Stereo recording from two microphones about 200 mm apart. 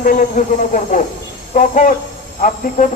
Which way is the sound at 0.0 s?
45° left (ahead or behind).